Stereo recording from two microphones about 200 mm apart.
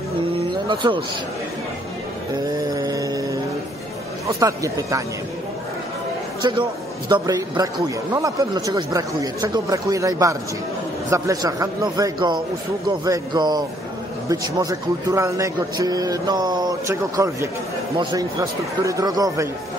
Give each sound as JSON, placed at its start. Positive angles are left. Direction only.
{"t": 0.7, "sound": "a man's voice", "side_deg": -25}
{"t": 2.3, "sound": "music", "side_deg": -20}
{"t": 4.4, "sound": "a man's voice", "side_deg": -15}
{"t": 6.4, "sound": "a man's voice", "side_deg": -20}